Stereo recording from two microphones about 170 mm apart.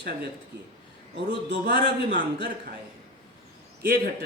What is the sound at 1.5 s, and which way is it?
Speech, 75° right (ahead or behind).